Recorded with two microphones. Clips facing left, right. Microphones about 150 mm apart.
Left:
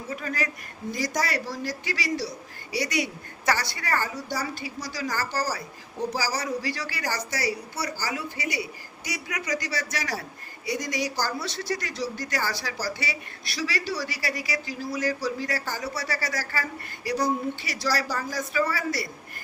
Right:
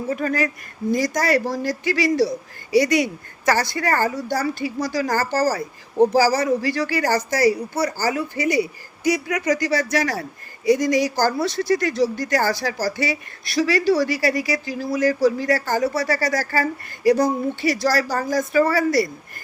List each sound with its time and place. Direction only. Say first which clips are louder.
0.1 s speech: right 8 dB; 55° right (ahead or behind)